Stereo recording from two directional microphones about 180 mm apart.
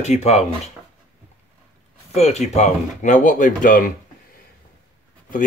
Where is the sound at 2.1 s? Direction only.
35° left (ahead or behind).